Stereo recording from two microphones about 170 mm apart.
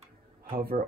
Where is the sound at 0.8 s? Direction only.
45° right (ahead or behind).